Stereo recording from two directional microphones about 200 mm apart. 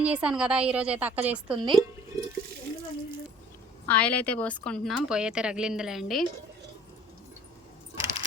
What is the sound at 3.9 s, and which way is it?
A woman's voice, 5° left (ahead or behind).